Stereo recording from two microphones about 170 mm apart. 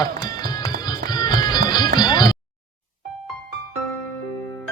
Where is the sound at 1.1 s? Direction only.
25° left (ahead or behind).